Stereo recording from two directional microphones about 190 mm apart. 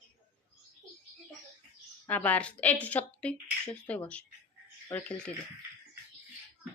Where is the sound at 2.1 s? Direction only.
10° left (ahead or behind).